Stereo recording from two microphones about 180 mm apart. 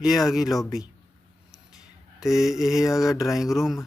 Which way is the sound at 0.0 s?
Centre (ahead or behind).